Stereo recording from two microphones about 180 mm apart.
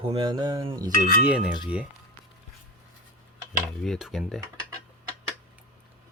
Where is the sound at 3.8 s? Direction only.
Centre (ahead or behind).